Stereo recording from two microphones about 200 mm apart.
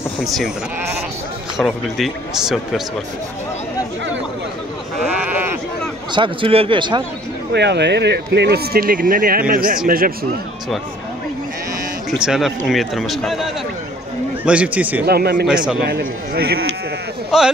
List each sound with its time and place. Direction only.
0.2 s a man's voice: centre (ahead or behind)
1.6 s a man's voice: centre (ahead or behind)
5.0 s sheep: 5° right (ahead or behind)
6.1 s a man's voice: 25° right (ahead or behind)
7.5 s a man's voice: 60° right (ahead or behind)
12.1 s a man's voice: centre (ahead or behind)
15.0 s a man's voice: 50° right (ahead or behind)
15.4 s a man's voice: 5° right (ahead or behind)
15.9 s a man's voice: 50° right (ahead or behind)
17.3 s a man's voice: centre (ahead or behind)